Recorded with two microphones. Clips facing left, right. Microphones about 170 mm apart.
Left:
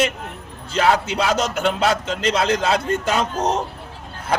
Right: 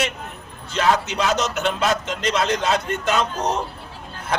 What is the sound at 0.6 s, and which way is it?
A man's voice, 30° left (ahead or behind).